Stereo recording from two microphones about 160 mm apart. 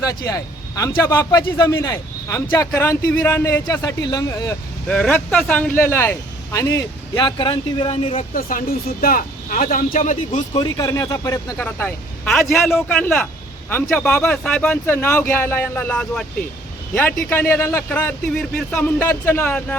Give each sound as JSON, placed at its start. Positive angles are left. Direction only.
{"t": 0.0, "sound": "speech", "side_deg": 20}
{"t": 4.9, "sound": "speech", "side_deg": 5}
{"t": 8.3, "sound": "speech", "side_deg": 60}
{"t": 10.8, "sound": "a man's voice", "side_deg": 20}